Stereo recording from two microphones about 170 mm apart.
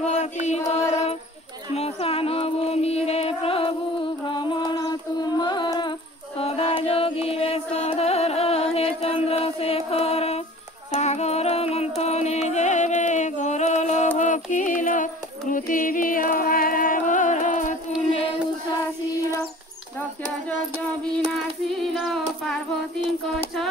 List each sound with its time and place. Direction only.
0.0 s music: 40° left (ahead or behind)
1.7 s speech: 40° left (ahead or behind)
4.4 s mantra: 25° left (ahead or behind)
8.7 s music: 35° left (ahead or behind)
21.3 s a sound: centre (ahead or behind)